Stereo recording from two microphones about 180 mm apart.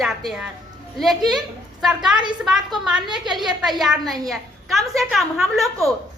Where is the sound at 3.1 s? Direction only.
25° right (ahead or behind).